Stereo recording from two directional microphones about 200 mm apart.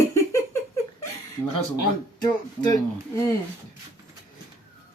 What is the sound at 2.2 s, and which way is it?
Speech, 20° left (ahead or behind).